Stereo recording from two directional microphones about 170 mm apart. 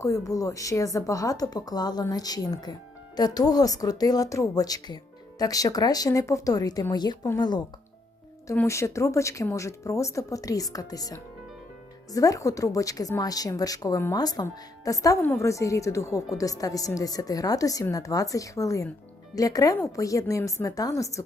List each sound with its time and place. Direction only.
0.0 s a woman's voice: 20° left (ahead or behind)